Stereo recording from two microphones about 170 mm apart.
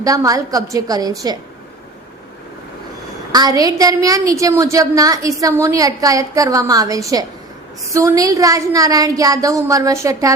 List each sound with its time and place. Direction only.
0.0 s a woman's voice: 20° right (ahead or behind)
3.3 s a woman's voice: 20° right (ahead or behind)